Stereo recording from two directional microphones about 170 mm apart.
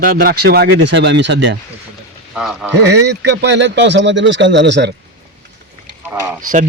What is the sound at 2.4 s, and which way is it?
Speech, 5° right (ahead or behind).